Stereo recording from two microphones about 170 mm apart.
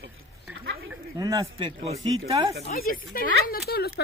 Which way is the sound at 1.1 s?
20° right (ahead or behind).